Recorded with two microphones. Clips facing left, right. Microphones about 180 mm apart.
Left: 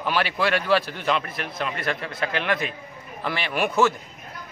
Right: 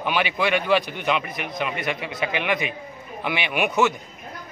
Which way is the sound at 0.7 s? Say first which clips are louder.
Right 1 dB; 15° right (ahead or behind).